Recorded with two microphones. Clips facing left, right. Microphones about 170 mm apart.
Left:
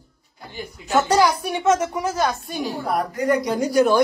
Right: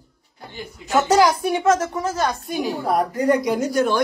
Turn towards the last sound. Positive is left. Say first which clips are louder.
# left 3 dB
turn(degrees=5)  # may be behind; listen again after turning